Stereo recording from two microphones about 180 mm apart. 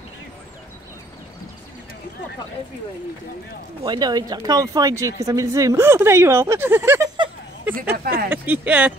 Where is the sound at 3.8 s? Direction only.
25° right (ahead or behind).